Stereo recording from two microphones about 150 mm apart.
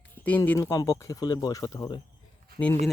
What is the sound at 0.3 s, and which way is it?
Speech, 10° left (ahead or behind).